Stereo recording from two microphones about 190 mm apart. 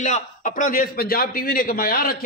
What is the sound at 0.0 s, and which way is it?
A man's voice, 40° left (ahead or behind).